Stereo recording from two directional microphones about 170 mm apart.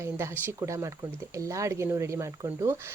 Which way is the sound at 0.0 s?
15° right (ahead or behind).